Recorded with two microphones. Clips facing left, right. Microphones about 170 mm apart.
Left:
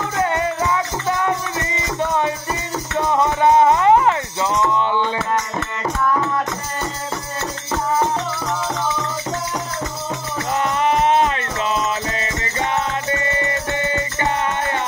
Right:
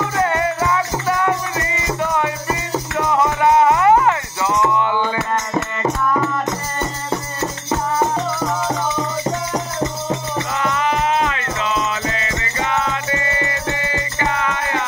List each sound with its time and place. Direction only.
0.2 s music: 20° left (ahead or behind)
3.3 s music: 25° left (ahead or behind)